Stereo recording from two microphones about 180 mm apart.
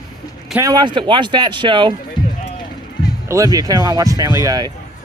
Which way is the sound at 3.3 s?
20° right (ahead or behind).